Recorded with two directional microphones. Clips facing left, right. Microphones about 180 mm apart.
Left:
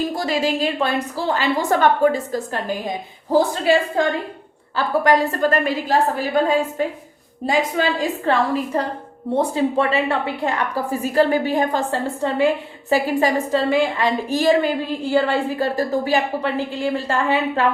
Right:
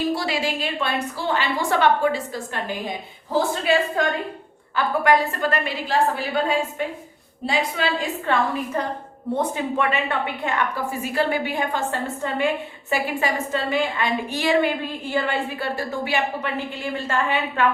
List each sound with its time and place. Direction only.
0.1 s a woman's voice: 45° left (ahead or behind)